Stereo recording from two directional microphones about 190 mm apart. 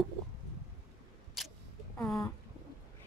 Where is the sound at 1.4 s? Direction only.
Centre (ahead or behind).